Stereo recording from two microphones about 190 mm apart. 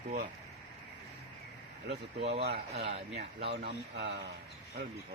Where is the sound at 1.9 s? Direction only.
60° right (ahead or behind).